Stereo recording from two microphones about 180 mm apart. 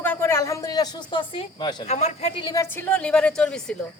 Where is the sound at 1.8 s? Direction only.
40° left (ahead or behind).